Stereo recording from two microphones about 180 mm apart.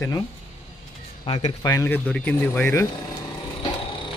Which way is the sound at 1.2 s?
30° left (ahead or behind).